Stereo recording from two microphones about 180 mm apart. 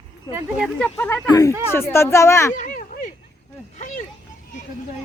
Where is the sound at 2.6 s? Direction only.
50° left (ahead or behind).